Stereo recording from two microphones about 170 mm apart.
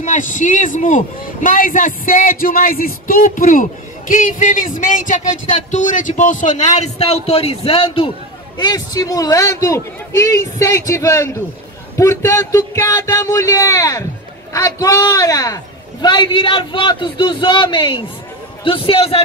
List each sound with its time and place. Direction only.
0.0 s a man's voice: 45° left (ahead or behind)